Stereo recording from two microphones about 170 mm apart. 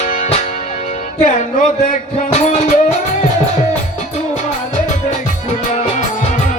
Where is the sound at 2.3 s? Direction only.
45° left (ahead or behind).